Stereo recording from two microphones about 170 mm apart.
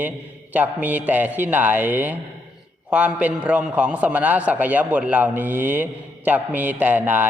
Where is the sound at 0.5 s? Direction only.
10° right (ahead or behind).